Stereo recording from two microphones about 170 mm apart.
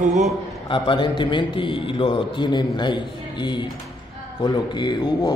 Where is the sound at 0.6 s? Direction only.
30° left (ahead or behind).